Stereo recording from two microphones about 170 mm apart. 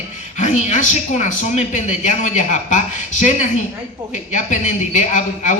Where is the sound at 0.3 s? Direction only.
45° left (ahead or behind).